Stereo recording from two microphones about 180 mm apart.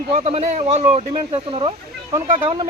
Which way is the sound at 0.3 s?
35° right (ahead or behind).